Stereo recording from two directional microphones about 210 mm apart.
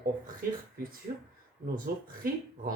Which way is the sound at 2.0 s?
45° right (ahead or behind).